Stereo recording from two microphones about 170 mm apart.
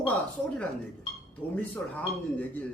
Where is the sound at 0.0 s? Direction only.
5° left (ahead or behind).